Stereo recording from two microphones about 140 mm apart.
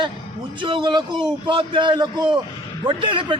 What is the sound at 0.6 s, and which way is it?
A man's voice, 35° right (ahead or behind).